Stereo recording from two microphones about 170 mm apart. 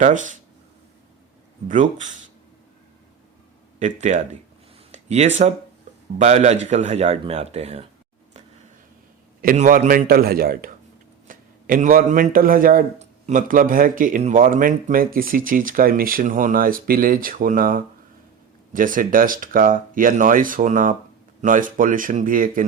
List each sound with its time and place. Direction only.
0.0 s speech: 50° right (ahead or behind)
1.6 s speech: 50° right (ahead or behind)
4.1 s speech: 45° right (ahead or behind)
4.9 s a sound: 40° right (ahead or behind)
6.1 s speech: 40° right (ahead or behind)
9.4 s speech: 55° right (ahead or behind)
10.1 s a man's voice: 60° right (ahead or behind)